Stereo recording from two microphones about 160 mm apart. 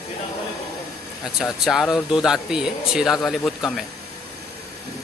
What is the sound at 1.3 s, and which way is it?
Speech, centre (ahead or behind).